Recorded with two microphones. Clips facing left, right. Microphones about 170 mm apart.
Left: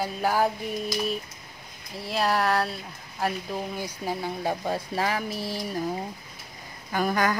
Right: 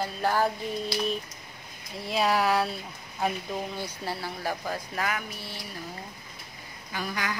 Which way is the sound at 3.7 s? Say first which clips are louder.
Left 3 dB; 15° left (ahead or behind).